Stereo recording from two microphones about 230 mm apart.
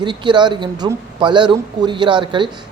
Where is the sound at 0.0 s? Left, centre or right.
Centre.